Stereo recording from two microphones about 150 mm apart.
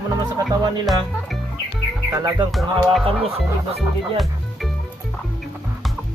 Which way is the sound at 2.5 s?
Centre (ahead or behind).